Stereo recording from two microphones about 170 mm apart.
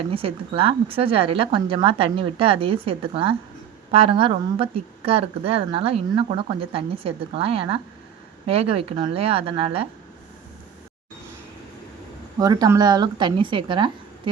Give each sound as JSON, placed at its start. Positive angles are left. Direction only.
{"t": 0.1, "sound": "a woman's voice", "side_deg": -30}
{"t": 12.4, "sound": "a woman's voice", "side_deg": -20}